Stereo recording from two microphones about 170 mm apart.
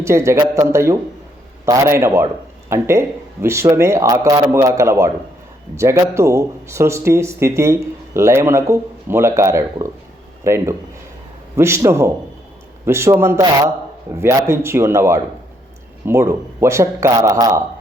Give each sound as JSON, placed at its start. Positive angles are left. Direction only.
{"t": 0.0, "sound": "speech", "side_deg": -15}